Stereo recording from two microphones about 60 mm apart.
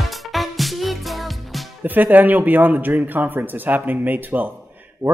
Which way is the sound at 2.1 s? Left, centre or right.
Right.